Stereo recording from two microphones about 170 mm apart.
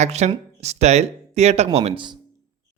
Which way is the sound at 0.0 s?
40° right (ahead or behind).